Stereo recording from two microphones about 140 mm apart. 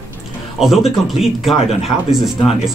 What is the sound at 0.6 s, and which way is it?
Speech, centre (ahead or behind).